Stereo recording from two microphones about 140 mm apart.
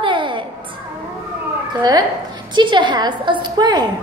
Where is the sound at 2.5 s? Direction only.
35° right (ahead or behind).